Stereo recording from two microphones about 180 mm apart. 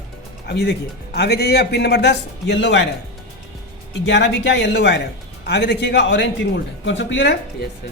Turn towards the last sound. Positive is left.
turn(degrees=70)  # may be behind; listen again after turning